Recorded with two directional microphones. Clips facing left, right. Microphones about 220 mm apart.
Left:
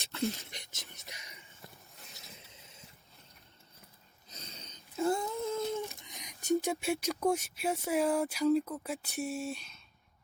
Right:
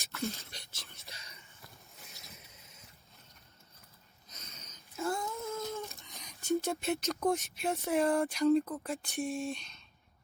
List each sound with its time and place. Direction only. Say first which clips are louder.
0.3 s whispering: left 2 dB; 15° left (ahead or behind)
4.3 s a sound: left 4 dB; 30° left (ahead or behind)
5.7 s speech: left 4 dB; 15° left (ahead or behind)